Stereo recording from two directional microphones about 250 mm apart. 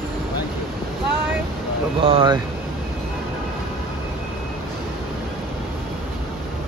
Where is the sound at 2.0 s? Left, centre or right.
Right.